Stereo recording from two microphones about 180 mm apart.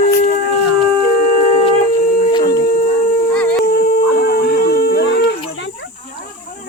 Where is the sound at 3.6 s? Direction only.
55° left (ahead or behind); by 5.3 s 70° left (ahead or behind).